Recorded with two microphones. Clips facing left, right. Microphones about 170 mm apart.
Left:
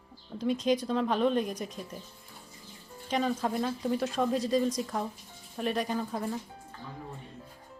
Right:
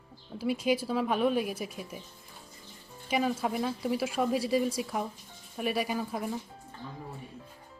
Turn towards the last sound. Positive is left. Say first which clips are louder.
# left 1 dB
turn(degrees=-10)  # may be behind; listen again after turning